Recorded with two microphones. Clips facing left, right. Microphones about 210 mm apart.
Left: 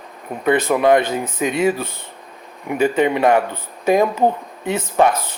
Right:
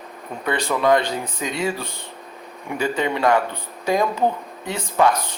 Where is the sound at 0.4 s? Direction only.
20° left (ahead or behind).